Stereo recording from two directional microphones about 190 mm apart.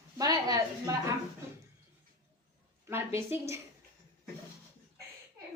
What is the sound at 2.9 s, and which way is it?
Speech, 10° right (ahead or behind).